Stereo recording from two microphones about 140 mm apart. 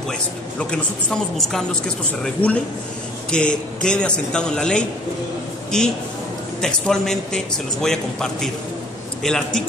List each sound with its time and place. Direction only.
0.6 s speech: 5° left (ahead or behind)